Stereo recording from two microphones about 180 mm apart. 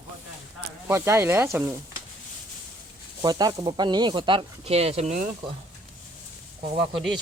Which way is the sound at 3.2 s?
20° right (ahead or behind).